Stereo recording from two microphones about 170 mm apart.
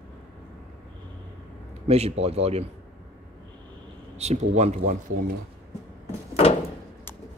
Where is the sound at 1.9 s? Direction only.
35° right (ahead or behind).